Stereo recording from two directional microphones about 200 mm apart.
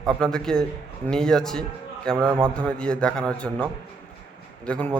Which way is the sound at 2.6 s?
5° left (ahead or behind).